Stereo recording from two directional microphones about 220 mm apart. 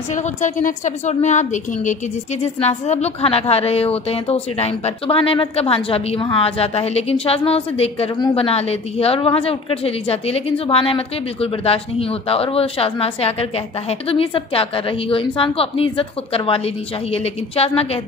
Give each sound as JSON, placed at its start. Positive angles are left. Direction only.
{"t": 0.1, "sound": "a woman's voice", "side_deg": 35}